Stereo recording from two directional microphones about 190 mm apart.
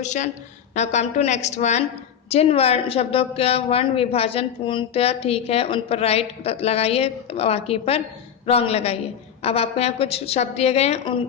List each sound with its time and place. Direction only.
0.0 s a woman's voice: 40° left (ahead or behind)